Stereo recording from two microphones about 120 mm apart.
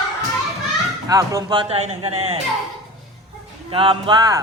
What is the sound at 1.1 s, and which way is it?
Speech, 30° right (ahead or behind).